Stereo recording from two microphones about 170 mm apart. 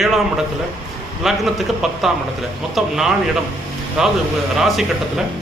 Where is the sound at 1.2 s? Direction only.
Centre (ahead or behind).